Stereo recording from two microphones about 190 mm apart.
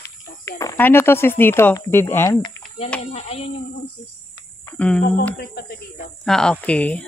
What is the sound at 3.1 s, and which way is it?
Speech, 30° left (ahead or behind).